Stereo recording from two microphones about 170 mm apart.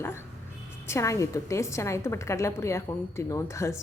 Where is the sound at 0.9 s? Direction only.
15° left (ahead or behind).